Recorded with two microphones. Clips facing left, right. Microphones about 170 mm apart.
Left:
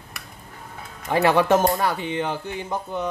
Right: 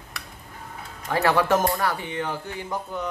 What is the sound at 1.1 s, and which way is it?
Speech, 20° left (ahead or behind).